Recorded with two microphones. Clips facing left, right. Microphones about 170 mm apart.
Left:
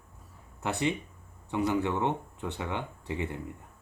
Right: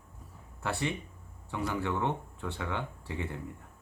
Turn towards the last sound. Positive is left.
turn(degrees=20)  # may be behind; listen again after turning